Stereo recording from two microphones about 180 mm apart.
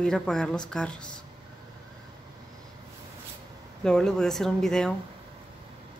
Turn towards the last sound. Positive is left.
turn(degrees=5)  # may be behind; listen again after turning